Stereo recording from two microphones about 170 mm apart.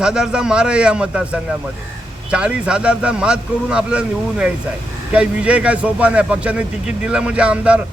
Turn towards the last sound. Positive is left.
turn(degrees=-5)  # may be behind; listen again after turning